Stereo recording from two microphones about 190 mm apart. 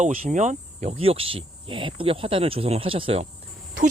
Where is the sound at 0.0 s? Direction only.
40° right (ahead or behind).